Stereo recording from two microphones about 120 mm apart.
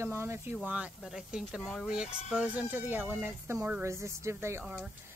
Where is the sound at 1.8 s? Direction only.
5° right (ahead or behind).